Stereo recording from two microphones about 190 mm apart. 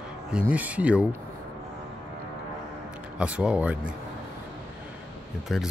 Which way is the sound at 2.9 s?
5° right (ahead or behind).